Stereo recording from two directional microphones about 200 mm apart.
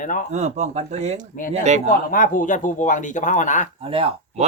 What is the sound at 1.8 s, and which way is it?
Speech, 40° left (ahead or behind).